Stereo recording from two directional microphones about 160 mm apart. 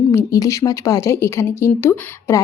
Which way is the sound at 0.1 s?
20° left (ahead or behind).